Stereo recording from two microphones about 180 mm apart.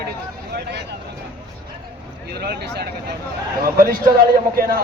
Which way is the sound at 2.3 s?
65° right (ahead or behind).